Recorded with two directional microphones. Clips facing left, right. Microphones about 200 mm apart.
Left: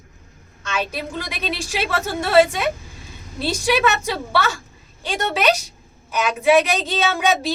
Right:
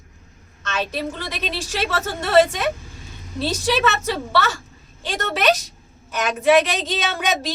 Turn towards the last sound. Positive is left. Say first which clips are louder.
# left 4 dB
turn(degrees=10)  # may be behind; listen again after turning